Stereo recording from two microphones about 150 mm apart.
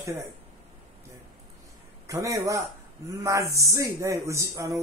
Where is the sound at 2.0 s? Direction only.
20° right (ahead or behind).